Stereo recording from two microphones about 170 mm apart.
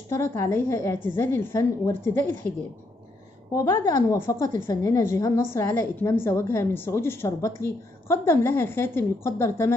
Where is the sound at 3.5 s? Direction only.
20° left (ahead or behind).